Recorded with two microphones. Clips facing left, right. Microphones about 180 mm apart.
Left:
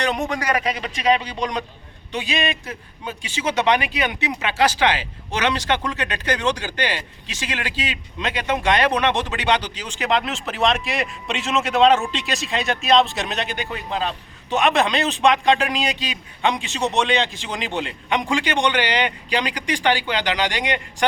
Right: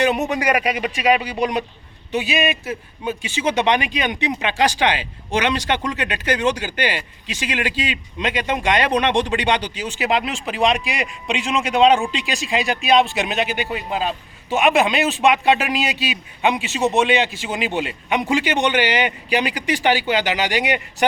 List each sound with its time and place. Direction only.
0.0 s speech: 5° right (ahead or behind)
8.2 s speech: 15° right (ahead or behind)
13.2 s speech: 15° right (ahead or behind)